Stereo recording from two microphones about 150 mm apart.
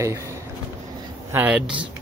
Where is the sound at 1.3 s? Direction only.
15° right (ahead or behind).